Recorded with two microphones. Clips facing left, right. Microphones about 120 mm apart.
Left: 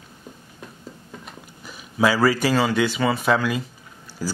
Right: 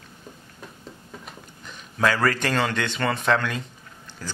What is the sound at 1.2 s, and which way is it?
Speech, 5° left (ahead or behind).